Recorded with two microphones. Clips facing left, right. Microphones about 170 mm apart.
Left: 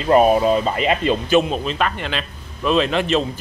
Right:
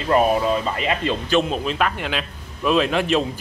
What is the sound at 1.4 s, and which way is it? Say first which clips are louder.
Speech: left 1 dB; centre (ahead or behind).